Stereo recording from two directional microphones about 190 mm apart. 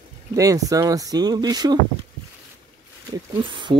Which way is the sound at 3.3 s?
25° right (ahead or behind).